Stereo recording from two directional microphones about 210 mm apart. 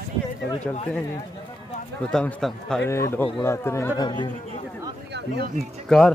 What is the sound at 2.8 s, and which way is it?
Speech, 15° left (ahead or behind).